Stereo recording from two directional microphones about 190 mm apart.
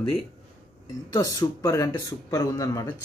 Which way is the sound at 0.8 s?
20° left (ahead or behind).